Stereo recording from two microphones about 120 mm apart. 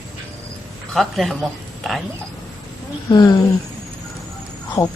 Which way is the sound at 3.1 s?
35° left (ahead or behind).